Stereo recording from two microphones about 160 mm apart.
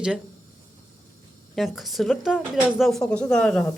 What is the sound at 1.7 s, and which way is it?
Speech, centre (ahead or behind).